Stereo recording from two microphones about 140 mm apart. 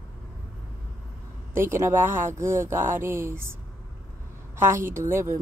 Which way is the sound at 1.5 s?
20° right (ahead or behind).